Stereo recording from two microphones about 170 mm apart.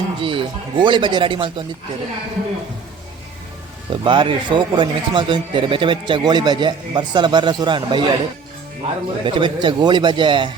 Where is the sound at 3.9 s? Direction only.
30° right (ahead or behind).